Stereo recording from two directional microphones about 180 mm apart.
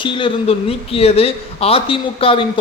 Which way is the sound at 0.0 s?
30° left (ahead or behind).